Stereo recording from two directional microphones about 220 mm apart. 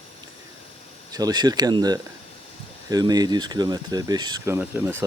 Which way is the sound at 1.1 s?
20° right (ahead or behind).